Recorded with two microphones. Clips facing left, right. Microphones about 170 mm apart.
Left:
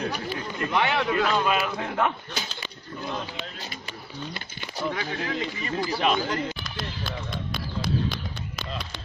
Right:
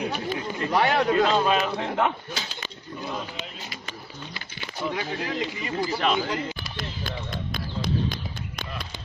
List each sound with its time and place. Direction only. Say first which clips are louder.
0.0 s a sound: right 2 dB; 20° right (ahead or behind)
0.7 s a man's voice: right 3 dB; 40° right (ahead or behind); by 2.1 s 20° right (ahead or behind)
4.9 s speech: right 1 dB; 15° right (ahead or behind)
5.9 s speech: left 1 dB; 5° left (ahead or behind)
6.1 s speech: even; 10° right (ahead or behind)